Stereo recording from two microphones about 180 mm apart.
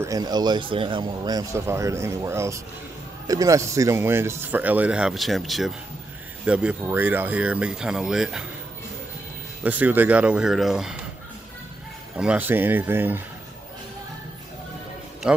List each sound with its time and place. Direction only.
0.0 s speech: 20° right (ahead or behind); by 8.5 s 5° right (ahead or behind)
9.6 s speech: 10° right (ahead or behind)
12.2 s speech: 10° right (ahead or behind)
15.2 s speech: 5° right (ahead or behind)